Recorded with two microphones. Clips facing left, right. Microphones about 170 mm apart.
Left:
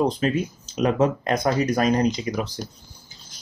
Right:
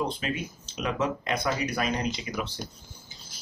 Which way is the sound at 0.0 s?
40° left (ahead or behind).